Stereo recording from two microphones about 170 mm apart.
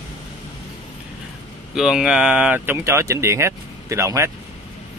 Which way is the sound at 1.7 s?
5° right (ahead or behind).